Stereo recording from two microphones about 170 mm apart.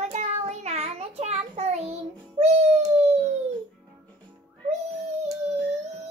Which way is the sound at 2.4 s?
40° right (ahead or behind).